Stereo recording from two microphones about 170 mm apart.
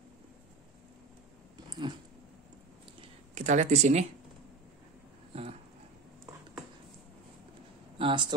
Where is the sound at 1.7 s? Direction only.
25° right (ahead or behind).